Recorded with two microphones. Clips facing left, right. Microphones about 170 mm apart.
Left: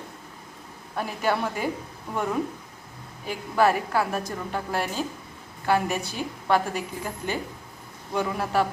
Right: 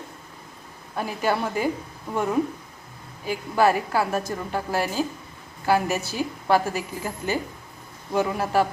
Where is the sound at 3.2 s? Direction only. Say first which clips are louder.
Right 1 dB; centre (ahead or behind).